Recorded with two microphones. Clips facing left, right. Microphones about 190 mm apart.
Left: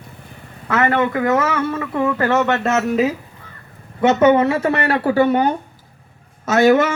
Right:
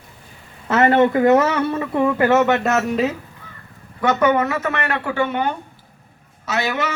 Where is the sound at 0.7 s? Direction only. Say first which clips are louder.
Right 3 dB; 25° right (ahead or behind); by 3.2 s 5° left (ahead or behind).